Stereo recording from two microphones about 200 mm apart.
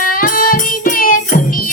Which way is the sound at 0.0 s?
45° left (ahead or behind).